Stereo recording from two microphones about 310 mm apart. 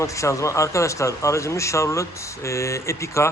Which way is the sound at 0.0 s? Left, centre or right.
Centre.